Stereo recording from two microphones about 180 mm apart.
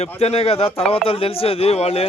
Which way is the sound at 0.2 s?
35° left (ahead or behind).